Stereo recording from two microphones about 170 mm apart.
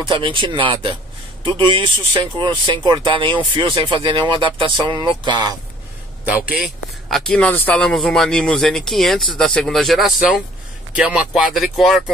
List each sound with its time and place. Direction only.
0.1 s speech: 30° right (ahead or behind)
6.5 s speech: centre (ahead or behind)